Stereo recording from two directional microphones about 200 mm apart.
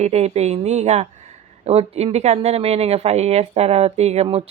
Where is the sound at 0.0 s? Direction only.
35° right (ahead or behind).